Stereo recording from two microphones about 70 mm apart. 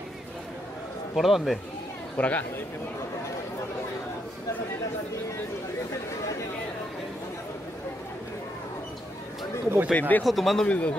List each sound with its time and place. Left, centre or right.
1.1 s a man's voice: centre
2.1 s speech: left
9.9 s speech: left
10.2 s a man's voice: centre
10.7 s speech: centre